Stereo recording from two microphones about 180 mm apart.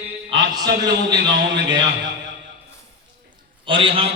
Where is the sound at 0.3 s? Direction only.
20° right (ahead or behind).